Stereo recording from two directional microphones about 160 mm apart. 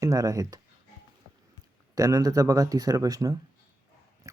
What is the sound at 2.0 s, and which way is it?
Speech, 20° right (ahead or behind).